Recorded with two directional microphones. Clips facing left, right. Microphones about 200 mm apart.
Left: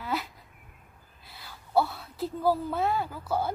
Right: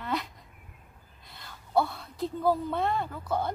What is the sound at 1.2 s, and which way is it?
A woman's voice, 5° left (ahead or behind).